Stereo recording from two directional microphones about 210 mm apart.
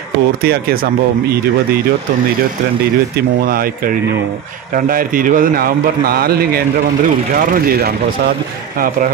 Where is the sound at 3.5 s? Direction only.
45° right (ahead or behind).